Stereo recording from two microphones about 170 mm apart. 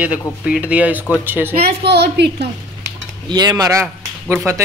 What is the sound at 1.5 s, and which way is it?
Speech, 65° right (ahead or behind).